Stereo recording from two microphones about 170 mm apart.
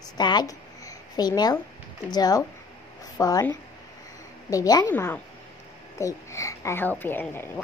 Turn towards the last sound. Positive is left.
turn(degrees=15)  # may be behind; listen again after turning